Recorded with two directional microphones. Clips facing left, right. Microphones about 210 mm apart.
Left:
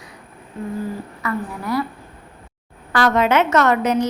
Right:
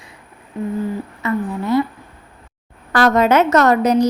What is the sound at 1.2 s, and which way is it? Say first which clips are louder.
Speech: right 5 dB; 25° right (ahead or behind).